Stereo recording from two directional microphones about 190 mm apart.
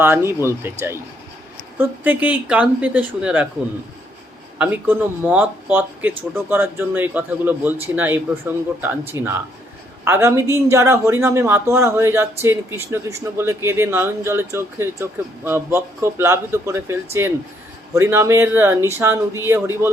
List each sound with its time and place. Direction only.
0.0 s speech: 10° right (ahead or behind)
4.5 s speech: 10° right (ahead or behind)